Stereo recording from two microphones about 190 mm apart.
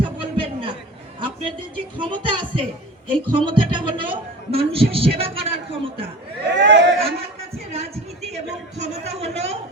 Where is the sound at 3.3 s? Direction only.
25° right (ahead or behind).